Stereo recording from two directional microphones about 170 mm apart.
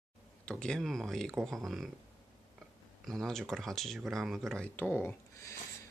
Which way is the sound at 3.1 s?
Centre (ahead or behind).